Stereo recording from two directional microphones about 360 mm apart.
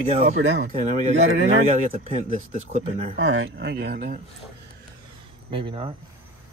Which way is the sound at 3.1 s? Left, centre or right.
Right.